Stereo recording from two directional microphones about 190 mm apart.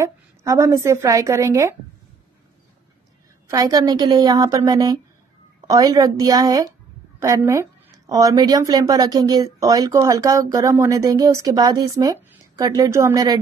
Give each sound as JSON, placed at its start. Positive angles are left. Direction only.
{"t": 0.0, "sound": "a woman's voice", "side_deg": -15}
{"t": 3.4, "sound": "a woman's voice", "side_deg": -20}